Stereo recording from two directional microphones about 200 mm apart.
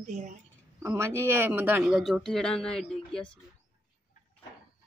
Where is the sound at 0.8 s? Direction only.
10° right (ahead or behind); by 2.8 s 5° left (ahead or behind).